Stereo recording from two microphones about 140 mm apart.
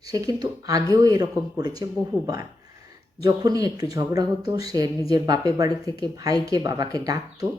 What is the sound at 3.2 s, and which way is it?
Speech, 25° right (ahead or behind).